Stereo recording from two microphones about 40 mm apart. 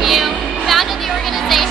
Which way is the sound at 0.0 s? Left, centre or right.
Centre.